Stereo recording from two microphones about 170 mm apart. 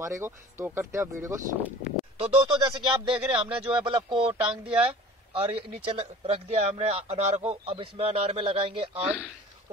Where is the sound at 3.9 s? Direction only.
30° right (ahead or behind).